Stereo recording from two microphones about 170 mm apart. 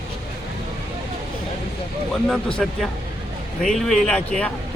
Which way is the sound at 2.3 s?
5° left (ahead or behind).